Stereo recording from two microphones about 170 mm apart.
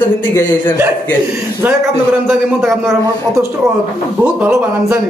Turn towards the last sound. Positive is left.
turn(degrees=-15)  # may be behind; listen again after turning